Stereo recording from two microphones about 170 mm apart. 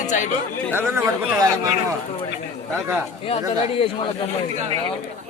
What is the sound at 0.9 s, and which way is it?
Speech, 15° right (ahead or behind).